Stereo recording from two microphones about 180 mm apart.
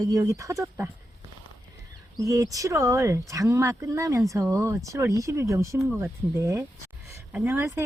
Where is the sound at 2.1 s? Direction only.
20° right (ahead or behind).